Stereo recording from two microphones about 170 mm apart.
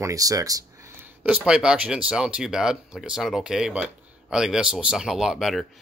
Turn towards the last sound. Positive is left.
turn(degrees=0)  # may be behind; listen again after turning